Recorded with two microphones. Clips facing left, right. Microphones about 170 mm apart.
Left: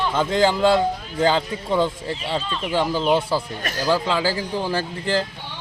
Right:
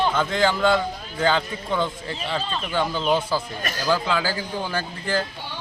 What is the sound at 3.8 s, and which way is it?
Speech, 25° left (ahead or behind).